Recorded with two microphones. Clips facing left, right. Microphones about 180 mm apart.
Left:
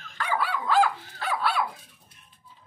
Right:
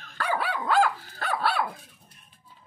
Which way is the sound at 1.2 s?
55° right (ahead or behind).